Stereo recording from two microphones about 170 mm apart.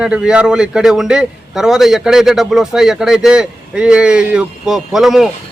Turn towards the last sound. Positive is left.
turn(degrees=0)  # may be behind; listen again after turning